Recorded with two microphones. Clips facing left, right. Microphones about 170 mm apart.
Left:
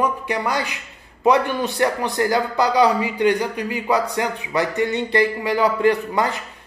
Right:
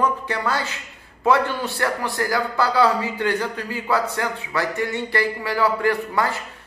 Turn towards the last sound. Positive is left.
turn(degrees=20)  # may be behind; listen again after turning